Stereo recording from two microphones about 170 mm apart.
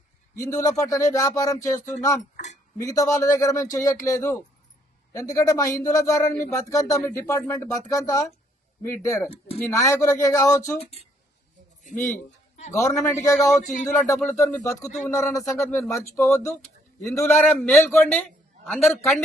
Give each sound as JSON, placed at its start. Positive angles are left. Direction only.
{"t": 0.3, "sound": "speech", "side_deg": 20}
{"t": 2.3, "sound": "speech", "side_deg": 45}
{"t": 2.7, "sound": "speech", "side_deg": 20}
{"t": 11.0, "sound": "speech", "side_deg": 35}
{"t": 11.8, "sound": "speech", "side_deg": 50}
{"t": 12.7, "sound": "speech", "side_deg": 15}
{"t": 13.6, "sound": "speech", "side_deg": 50}
{"t": 14.3, "sound": "speech", "side_deg": 15}
{"t": 17.5, "sound": "a man's voice", "side_deg": 0}
{"t": 17.8, "sound": "a man's voice", "side_deg": 10}